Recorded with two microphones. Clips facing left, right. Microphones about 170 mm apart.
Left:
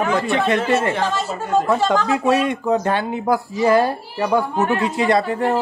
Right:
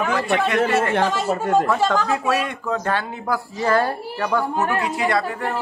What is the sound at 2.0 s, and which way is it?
Speech, 20° left (ahead or behind).